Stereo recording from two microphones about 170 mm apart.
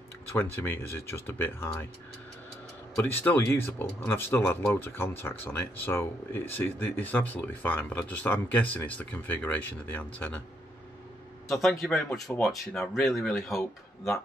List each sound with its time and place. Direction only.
0.4 s speech: 15° left (ahead or behind)
3.3 s speech: 15° left (ahead or behind)
11.8 s speech: 5° left (ahead or behind)